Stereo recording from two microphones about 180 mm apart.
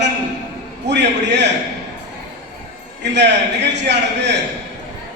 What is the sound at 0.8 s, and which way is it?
Speech, 75° right (ahead or behind).